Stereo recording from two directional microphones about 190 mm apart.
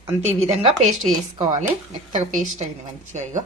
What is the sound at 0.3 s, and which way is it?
A woman's voice, 30° right (ahead or behind).